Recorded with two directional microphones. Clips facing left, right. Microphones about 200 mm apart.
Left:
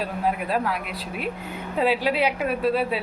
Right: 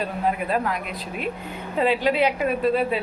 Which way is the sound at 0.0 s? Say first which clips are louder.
Right 1 dB; 5° left (ahead or behind).